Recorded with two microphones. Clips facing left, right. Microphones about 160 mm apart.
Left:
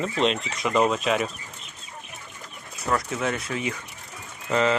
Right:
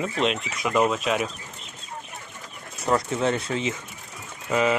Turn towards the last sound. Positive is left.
turn(degrees=-10)  # may be behind; listen again after turning